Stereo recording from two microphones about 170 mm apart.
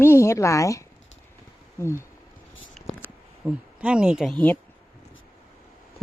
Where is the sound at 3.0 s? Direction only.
5° right (ahead or behind).